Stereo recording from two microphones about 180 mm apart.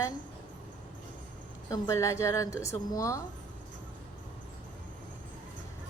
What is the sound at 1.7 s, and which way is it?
A woman's voice, 15° left (ahead or behind).